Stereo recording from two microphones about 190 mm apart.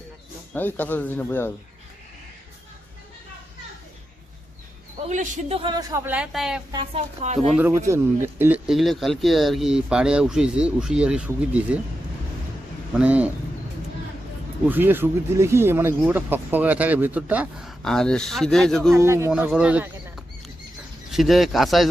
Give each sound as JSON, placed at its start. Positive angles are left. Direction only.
{"t": 0.5, "sound": "speech", "side_deg": 10}
{"t": 5.0, "sound": "a man's voice", "side_deg": -35}
{"t": 6.1, "sound": "speech", "side_deg": -5}
{"t": 6.9, "sound": "a man's voice", "side_deg": -35}
{"t": 7.3, "sound": "speech", "side_deg": 0}
{"t": 7.7, "sound": "speech", "side_deg": -15}
{"t": 12.9, "sound": "speech", "side_deg": -5}
{"t": 14.7, "sound": "speech", "side_deg": -10}
{"t": 18.9, "sound": "speech", "side_deg": -15}